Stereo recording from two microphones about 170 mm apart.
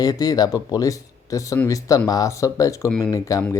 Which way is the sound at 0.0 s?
20° left (ahead or behind).